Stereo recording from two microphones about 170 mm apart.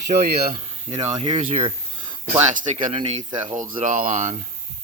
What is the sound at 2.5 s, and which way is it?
Speech, 50° right (ahead or behind).